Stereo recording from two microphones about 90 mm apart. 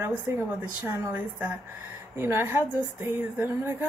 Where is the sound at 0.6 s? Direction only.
15° right (ahead or behind).